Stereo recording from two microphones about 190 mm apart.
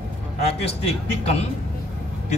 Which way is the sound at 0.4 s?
35° left (ahead or behind).